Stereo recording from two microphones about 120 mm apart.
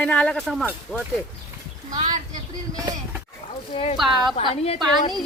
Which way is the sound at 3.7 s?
55° left (ahead or behind).